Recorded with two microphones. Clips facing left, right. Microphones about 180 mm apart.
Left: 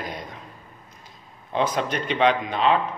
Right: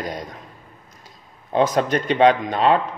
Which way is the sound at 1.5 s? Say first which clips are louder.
Right 5 dB; 45° right (ahead or behind).